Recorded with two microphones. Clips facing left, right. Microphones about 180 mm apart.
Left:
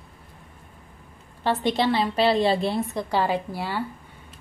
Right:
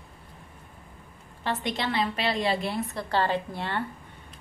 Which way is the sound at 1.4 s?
35° left (ahead or behind).